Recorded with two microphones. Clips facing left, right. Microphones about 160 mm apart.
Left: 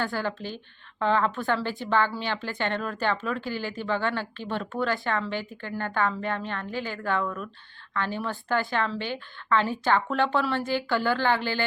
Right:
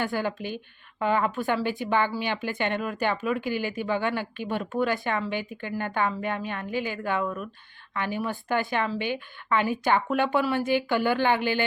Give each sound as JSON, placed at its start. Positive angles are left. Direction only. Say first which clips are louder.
{"t": 0.0, "sound": "speech", "louder": "right 1 dB", "side_deg": -20}